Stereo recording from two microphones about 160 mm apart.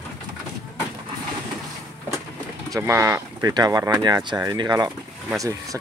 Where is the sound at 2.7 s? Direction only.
20° right (ahead or behind).